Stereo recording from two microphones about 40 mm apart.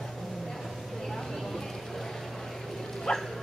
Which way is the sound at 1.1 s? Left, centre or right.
Centre.